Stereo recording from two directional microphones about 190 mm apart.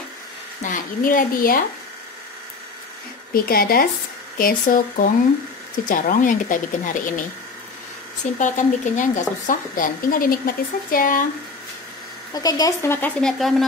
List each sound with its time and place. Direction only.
0.6 s a woman's voice: 45° left (ahead or behind)
3.3 s a woman's voice: 50° left (ahead or behind)
8.4 s a woman's voice: 40° left (ahead or behind)
12.4 s speech: 20° left (ahead or behind); by 13.7 s centre (ahead or behind)